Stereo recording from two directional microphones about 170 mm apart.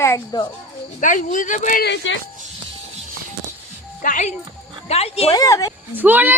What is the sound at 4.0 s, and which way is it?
Speech, 50° left (ahead or behind).